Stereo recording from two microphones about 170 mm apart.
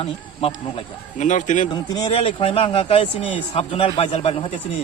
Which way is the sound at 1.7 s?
25° left (ahead or behind).